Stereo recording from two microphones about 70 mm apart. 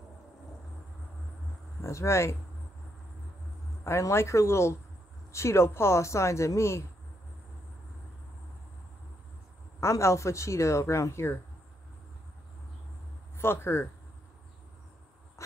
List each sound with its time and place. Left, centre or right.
1.8 s speech: left
3.8 s speech: left
9.8 s speech: left
13.4 s speech: left